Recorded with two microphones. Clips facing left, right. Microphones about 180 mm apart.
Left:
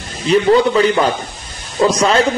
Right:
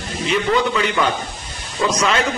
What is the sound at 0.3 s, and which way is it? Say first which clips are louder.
A man's voice: left 7 dB; 35° left (ahead or behind).